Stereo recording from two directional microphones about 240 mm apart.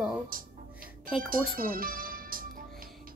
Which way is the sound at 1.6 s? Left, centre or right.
Right.